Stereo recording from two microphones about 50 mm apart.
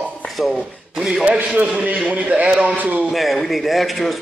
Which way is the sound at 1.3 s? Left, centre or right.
Right.